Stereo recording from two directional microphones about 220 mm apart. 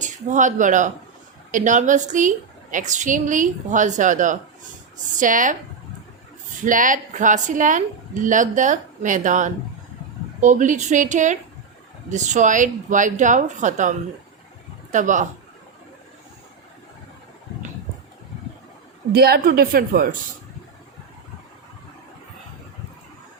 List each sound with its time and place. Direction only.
0.0 s a woman's voice: 35° right (ahead or behind)
6.7 s a woman's voice: 35° right (ahead or behind)
14.9 s a woman's voice: 35° right (ahead or behind)
19.1 s a woman's voice: 45° right (ahead or behind)